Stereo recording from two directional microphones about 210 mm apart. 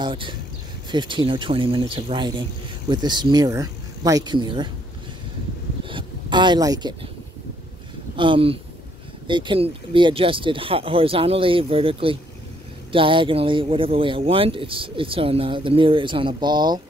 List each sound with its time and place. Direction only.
0.0 s speech: 20° right (ahead or behind)
5.9 s a sound: 20° right (ahead or behind)
8.2 s speech: 25° right (ahead or behind)